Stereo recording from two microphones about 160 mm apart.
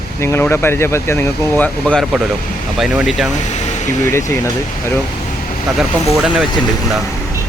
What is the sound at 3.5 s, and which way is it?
Air conditioning, 45° left (ahead or behind).